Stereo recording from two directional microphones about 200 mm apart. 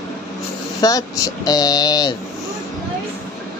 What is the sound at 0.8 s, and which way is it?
Speech, 20° left (ahead or behind).